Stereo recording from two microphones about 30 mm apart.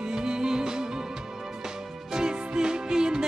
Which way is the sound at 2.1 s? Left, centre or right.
Right.